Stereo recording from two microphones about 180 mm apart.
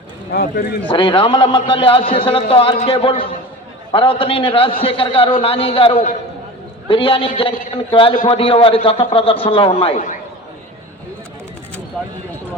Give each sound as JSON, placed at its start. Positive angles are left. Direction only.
{"t": 0.3, "sound": "speech", "side_deg": 55}
{"t": 0.9, "sound": "a man's voice", "side_deg": 30}